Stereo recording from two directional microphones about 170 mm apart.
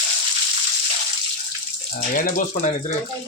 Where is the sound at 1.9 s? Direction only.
50° left (ahead or behind).